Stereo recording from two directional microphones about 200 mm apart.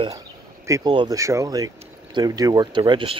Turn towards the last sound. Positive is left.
turn(degrees=-25)  # may be behind; listen again after turning